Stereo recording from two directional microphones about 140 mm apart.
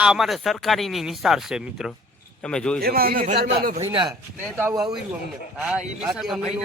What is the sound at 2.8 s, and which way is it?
Speech, 90° right.